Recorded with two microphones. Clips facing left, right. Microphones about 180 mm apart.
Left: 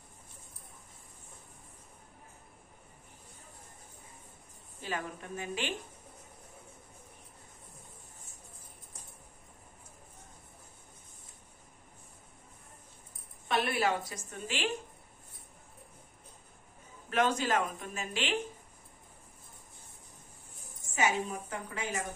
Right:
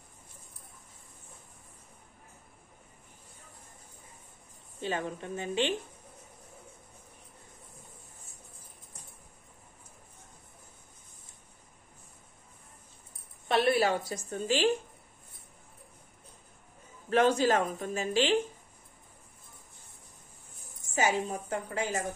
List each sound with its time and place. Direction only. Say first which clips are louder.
4.8 s a woman's voice: right 5 dB; 25° right (ahead or behind)
13.5 s a woman's voice: right 5 dB; 30° right (ahead or behind)
17.1 s speech: right 5 dB; 35° right (ahead or behind)
20.9 s speech: right 2 dB; 35° right (ahead or behind)